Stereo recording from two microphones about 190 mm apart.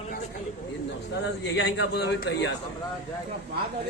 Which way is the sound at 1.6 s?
65° left (ahead or behind).